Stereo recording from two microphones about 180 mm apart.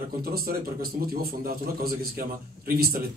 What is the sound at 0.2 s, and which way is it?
A man's voice, 55° right (ahead or behind).